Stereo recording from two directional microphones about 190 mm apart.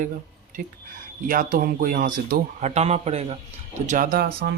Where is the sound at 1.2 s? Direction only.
45° right (ahead or behind).